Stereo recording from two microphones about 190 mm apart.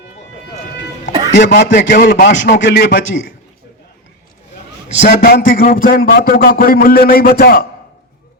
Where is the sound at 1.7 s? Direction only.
55° left (ahead or behind).